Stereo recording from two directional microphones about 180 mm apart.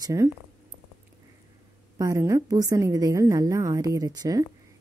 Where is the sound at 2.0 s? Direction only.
20° right (ahead or behind).